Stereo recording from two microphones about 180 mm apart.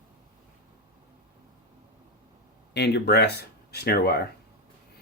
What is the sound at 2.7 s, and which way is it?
Speech, 65° left (ahead or behind).